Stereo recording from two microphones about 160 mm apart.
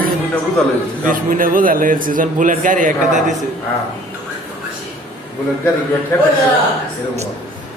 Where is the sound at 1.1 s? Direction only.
60° right (ahead or behind).